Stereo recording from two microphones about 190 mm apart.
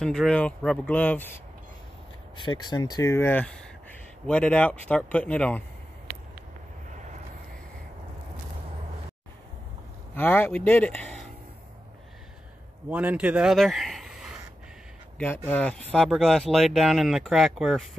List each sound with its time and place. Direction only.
0.0 s speech: 5° left (ahead or behind)
2.3 s speech: 25° left (ahead or behind); by 5.6 s 5° left (ahead or behind)
10.1 s speech: 10° left (ahead or behind)
12.9 s a man's voice: 5° right (ahead or behind)
15.1 s speech: 10° left (ahead or behind)